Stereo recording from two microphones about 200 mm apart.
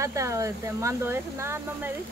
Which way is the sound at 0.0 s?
15° right (ahead or behind).